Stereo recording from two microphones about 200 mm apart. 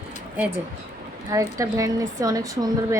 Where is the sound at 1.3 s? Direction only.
15° right (ahead or behind).